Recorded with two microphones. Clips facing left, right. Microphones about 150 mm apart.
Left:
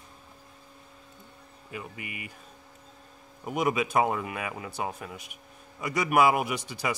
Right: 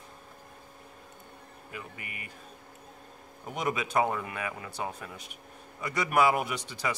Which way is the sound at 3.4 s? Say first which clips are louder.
Left 5 dB; 15° left (ahead or behind).